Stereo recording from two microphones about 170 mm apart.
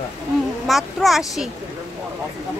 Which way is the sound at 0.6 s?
Centre (ahead or behind).